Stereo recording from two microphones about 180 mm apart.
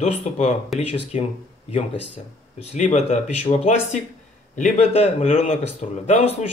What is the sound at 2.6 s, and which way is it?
Speech, 40° left (ahead or behind).